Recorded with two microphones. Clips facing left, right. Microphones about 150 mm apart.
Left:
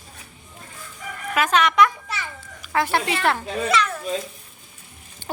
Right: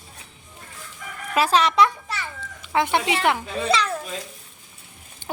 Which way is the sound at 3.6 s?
30° right (ahead or behind).